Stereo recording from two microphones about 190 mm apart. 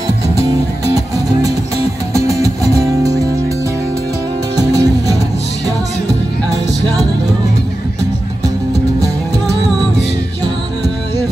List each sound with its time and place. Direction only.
0.0 s music: 20° right (ahead or behind)
4.6 s music: 20° right (ahead or behind)